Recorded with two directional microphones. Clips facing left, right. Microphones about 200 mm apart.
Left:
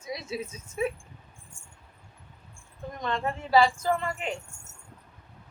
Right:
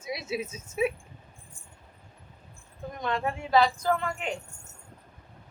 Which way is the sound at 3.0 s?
Centre (ahead or behind).